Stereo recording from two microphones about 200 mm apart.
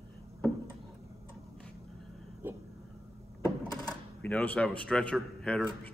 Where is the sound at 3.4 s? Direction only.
20° left (ahead or behind).